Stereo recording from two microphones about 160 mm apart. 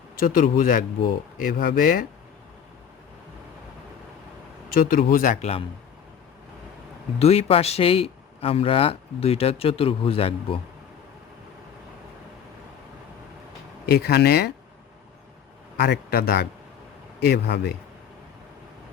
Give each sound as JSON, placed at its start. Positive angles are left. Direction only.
{"t": 0.2, "sound": "speech", "side_deg": 60}
{"t": 4.8, "sound": "speech", "side_deg": 60}
{"t": 7.2, "sound": "a man's voice", "side_deg": 40}
{"t": 13.8, "sound": "speech", "side_deg": 85}
{"t": 15.8, "sound": "speech", "side_deg": 80}